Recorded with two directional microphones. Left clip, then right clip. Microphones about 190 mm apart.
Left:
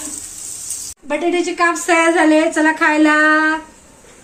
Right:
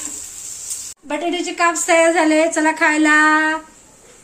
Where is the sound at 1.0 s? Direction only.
35° right (ahead or behind).